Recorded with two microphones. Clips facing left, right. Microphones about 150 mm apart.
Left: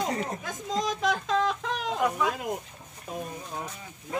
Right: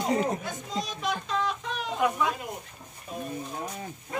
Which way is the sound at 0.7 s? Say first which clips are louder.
Left 5 dB; 90° left.